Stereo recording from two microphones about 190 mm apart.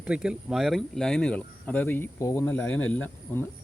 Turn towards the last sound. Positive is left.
turn(degrees=10)  # may be behind; listen again after turning